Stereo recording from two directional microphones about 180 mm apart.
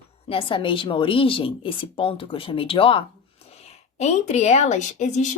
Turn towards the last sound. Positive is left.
turn(degrees=40)  # may be behind; listen again after turning